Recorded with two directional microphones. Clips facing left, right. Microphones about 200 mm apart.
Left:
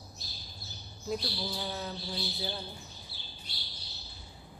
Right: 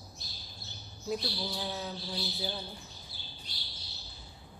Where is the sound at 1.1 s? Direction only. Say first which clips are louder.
Even; centre (ahead or behind).